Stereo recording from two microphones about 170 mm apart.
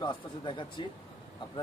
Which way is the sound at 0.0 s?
30° left (ahead or behind).